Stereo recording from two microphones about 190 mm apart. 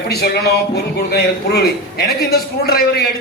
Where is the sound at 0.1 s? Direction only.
55° left (ahead or behind).